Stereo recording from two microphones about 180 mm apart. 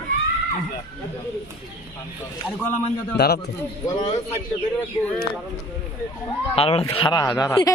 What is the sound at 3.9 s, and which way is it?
Speech, 25° left (ahead or behind).